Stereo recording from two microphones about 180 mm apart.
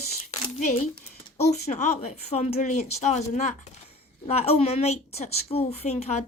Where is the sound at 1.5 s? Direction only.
40° left (ahead or behind).